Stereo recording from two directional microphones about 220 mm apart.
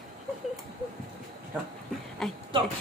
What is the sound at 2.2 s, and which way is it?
Speech, centre (ahead or behind).